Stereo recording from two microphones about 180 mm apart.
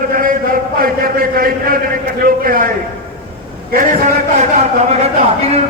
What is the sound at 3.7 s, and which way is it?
Speech, 45° right (ahead or behind).